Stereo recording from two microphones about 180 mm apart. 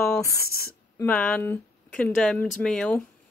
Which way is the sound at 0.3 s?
60° left (ahead or behind).